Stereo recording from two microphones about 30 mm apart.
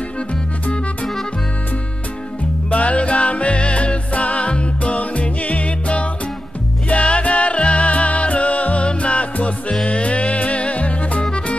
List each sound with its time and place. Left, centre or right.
2.7 s music: left